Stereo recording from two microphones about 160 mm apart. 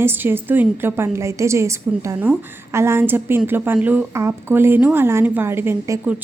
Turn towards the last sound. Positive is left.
turn(degrees=-15)  # may be behind; listen again after turning